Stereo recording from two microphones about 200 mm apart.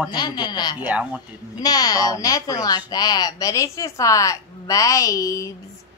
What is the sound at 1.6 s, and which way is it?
A woman's voice, 20° left (ahead or behind).